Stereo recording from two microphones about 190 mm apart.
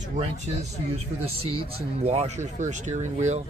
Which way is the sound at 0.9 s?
30° right (ahead or behind).